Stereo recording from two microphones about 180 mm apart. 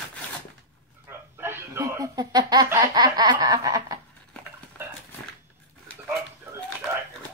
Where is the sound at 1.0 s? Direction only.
10° right (ahead or behind).